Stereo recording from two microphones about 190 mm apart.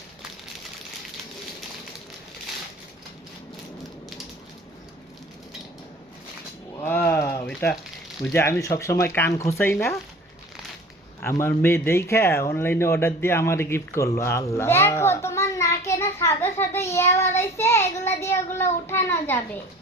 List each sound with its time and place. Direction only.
6.7 s a sound: 10° left (ahead or behind)
8.2 s a man's voice: 10° left (ahead or behind)
11.2 s a man's voice: 15° left (ahead or behind)